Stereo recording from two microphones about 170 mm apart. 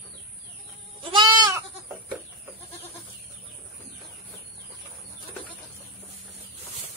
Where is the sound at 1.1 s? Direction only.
25° right (ahead or behind).